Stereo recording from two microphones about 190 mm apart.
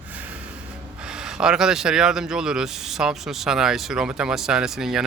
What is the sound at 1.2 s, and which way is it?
A man's voice, 5° right (ahead or behind).